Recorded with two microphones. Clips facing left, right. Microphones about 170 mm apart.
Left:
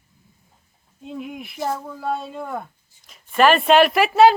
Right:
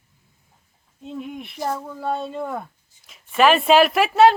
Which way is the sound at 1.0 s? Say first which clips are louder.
Even; centre (ahead or behind).